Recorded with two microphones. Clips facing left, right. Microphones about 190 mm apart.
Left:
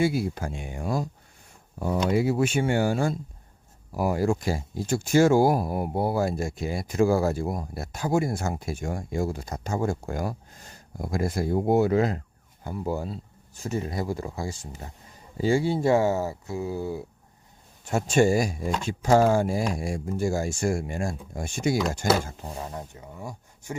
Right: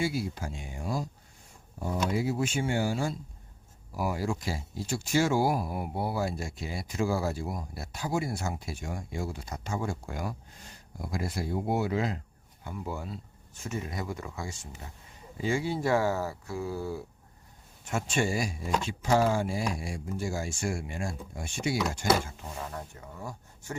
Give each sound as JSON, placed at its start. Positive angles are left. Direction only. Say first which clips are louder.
{"t": 0.0, "sound": "speech", "louder": "left 6 dB", "side_deg": 55}
{"t": 2.0, "sound": "speech", "louder": "left 7 dB", "side_deg": 65}
{"t": 17.8, "sound": "speech", "louder": "left 8 dB", "side_deg": 40}